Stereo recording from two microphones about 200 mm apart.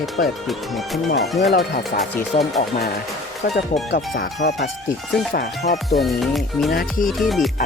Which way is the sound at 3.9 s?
55° left (ahead or behind).